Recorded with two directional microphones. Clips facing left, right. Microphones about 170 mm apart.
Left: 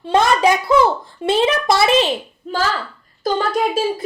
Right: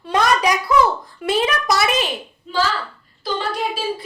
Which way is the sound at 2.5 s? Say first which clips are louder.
Right 1 dB; 45° left (ahead or behind).